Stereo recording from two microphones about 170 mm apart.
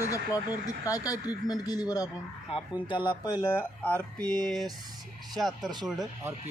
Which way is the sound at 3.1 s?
25° left (ahead or behind).